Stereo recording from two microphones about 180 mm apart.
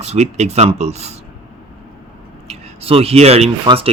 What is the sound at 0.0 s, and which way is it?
Speech, 35° right (ahead or behind).